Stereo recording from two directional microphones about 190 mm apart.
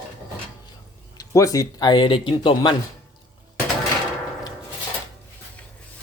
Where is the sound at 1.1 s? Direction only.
20° left (ahead or behind).